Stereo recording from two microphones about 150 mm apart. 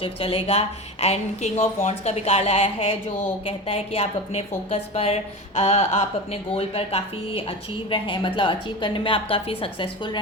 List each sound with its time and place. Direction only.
0.0 s a woman's voice: 40° left (ahead or behind)